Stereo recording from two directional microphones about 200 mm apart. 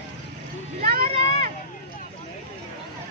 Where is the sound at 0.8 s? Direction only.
45° right (ahead or behind).